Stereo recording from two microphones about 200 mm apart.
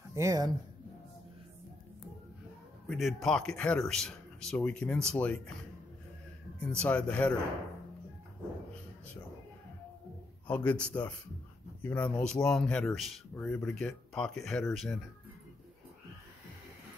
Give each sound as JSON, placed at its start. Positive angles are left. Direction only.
{"t": 0.1, "sound": "speech", "side_deg": -15}
{"t": 2.9, "sound": "speech", "side_deg": 0}
{"t": 6.6, "sound": "speech", "side_deg": 5}
{"t": 10.4, "sound": "speech", "side_deg": 5}